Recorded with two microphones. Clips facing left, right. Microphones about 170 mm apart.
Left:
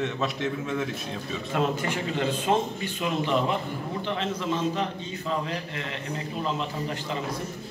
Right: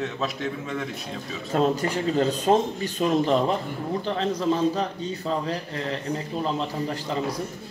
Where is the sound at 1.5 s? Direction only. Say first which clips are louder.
Right 4 dB; 35° right (ahead or behind).